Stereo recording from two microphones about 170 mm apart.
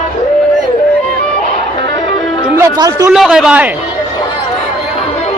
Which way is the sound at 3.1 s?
5° right (ahead or behind).